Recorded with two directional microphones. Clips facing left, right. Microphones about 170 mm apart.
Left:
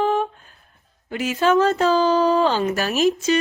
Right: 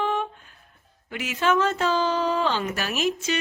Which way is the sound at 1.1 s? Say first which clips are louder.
Left 5 dB; 35° left (ahead or behind).